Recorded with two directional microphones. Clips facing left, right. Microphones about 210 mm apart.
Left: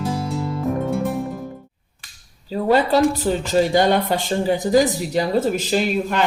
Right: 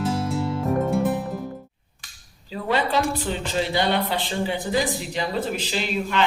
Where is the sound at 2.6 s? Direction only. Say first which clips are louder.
Left 7 dB; 40° left (ahead or behind).